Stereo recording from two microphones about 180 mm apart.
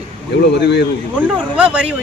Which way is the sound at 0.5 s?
70° left (ahead or behind).